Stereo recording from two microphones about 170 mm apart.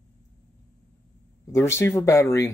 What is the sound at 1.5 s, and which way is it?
Speech, 15° left (ahead or behind).